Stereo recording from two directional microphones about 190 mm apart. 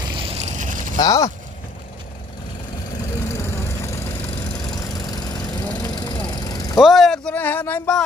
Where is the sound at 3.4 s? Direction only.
15° left (ahead or behind).